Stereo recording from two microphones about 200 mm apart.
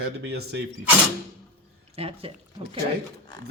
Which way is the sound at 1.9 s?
30° right (ahead or behind).